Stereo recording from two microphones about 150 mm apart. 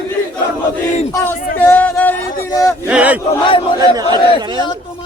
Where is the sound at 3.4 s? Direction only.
35° left (ahead or behind).